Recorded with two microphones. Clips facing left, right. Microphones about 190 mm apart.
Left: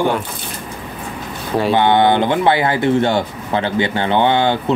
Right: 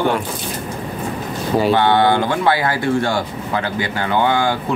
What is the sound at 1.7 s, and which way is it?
Speech, 20° left (ahead or behind).